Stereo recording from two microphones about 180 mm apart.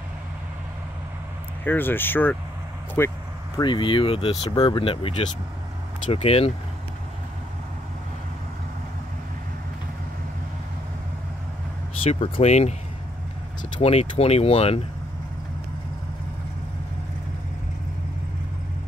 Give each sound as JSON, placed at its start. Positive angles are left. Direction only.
{"t": 1.6, "sound": "speech", "side_deg": 10}
{"t": 3.5, "sound": "speech", "side_deg": 25}
{"t": 12.0, "sound": "speech", "side_deg": 35}
{"t": 13.7, "sound": "speech", "side_deg": 35}